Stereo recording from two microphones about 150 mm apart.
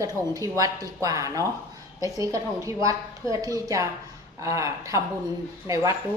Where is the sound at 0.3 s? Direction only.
25° right (ahead or behind).